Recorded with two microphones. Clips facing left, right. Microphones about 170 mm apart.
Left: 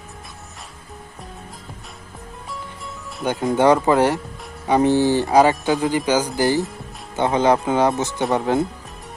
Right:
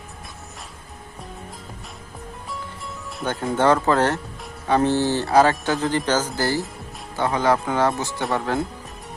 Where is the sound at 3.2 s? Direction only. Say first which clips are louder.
Left 3 dB; 15° left (ahead or behind).